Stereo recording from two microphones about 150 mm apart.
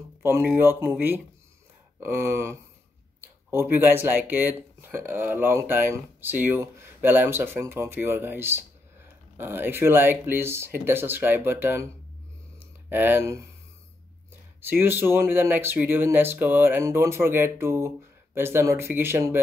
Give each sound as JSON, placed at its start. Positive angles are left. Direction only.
{"t": 0.2, "sound": "speech", "side_deg": -15}
{"t": 12.5, "sound": "a sound", "side_deg": -15}
{"t": 14.6, "sound": "speech", "side_deg": -15}